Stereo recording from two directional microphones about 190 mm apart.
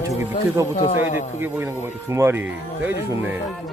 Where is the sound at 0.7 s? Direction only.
40° left (ahead or behind).